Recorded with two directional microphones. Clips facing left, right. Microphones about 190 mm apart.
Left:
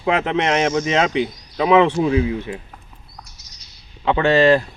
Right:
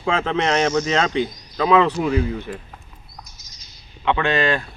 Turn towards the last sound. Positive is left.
turn(degrees=30)  # may be behind; listen again after turning